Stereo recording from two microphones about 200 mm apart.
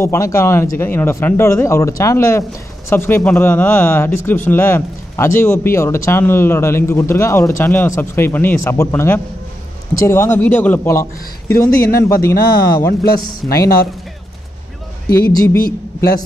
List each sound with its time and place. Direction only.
0.0 s a man's voice: 15° left (ahead or behind)